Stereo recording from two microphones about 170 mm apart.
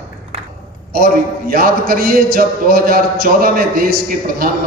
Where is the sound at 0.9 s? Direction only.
60° right (ahead or behind).